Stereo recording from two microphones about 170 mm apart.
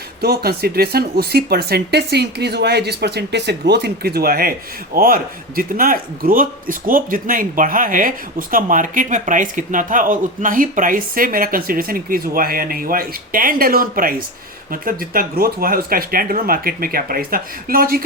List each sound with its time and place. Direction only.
0.2 s a man's voice: 65° right (ahead or behind)